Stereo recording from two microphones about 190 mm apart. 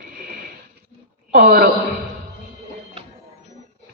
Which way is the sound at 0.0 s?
50° right (ahead or behind).